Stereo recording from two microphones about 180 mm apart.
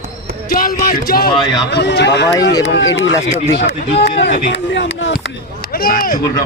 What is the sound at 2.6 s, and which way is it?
Speech, 90° left.